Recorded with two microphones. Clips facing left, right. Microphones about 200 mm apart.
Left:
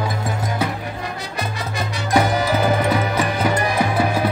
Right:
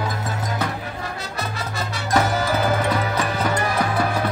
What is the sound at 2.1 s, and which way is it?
Music, 15° left (ahead or behind).